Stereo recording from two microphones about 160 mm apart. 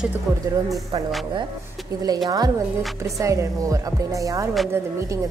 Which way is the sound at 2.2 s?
25° right (ahead or behind).